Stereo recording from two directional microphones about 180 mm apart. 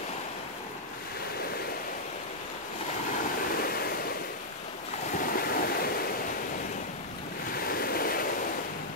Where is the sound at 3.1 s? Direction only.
55° left (ahead or behind).